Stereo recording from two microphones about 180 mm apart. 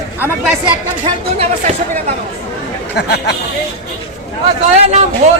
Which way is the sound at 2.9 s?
65° left (ahead or behind).